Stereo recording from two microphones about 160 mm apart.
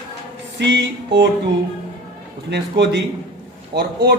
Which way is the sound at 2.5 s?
90° right.